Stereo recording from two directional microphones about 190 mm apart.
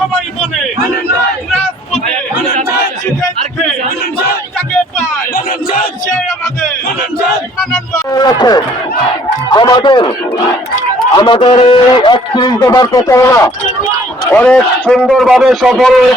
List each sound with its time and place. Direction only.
5.3 s a sound: 50° left (ahead or behind)
8.1 s a man's voice: 20° left (ahead or behind)
11.1 s a man's voice: 25° left (ahead or behind); by 15.9 s 5° right (ahead or behind)